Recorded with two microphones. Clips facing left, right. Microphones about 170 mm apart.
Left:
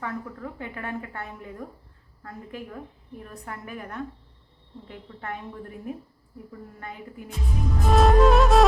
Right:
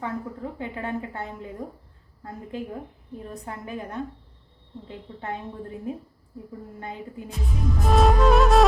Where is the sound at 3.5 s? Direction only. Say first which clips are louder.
Right 2 dB; 25° right (ahead or behind).